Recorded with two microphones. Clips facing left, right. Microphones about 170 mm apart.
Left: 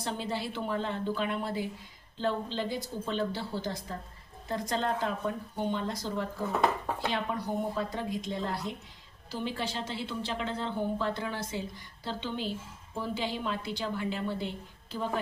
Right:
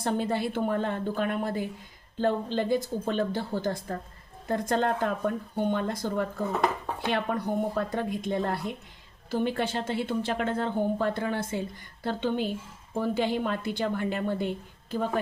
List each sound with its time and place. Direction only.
0.0 s a woman's voice: 55° right (ahead or behind)